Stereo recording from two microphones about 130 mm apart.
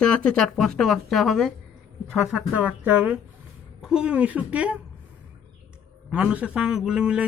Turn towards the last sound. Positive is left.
turn(degrees=-10)  # may be behind; listen again after turning